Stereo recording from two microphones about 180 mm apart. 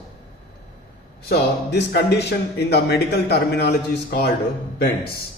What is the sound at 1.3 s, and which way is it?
Speech, 65° left (ahead or behind).